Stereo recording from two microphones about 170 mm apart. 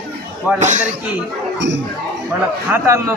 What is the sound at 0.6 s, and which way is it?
Speech, 45° right (ahead or behind).